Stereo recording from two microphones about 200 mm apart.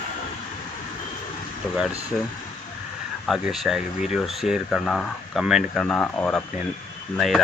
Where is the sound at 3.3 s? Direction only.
Centre (ahead or behind).